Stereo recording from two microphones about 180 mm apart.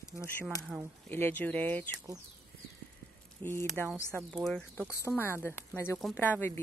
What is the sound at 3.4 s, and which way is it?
Speech, 15° left (ahead or behind).